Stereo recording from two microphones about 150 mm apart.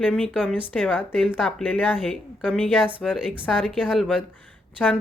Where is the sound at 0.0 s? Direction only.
10° left (ahead or behind).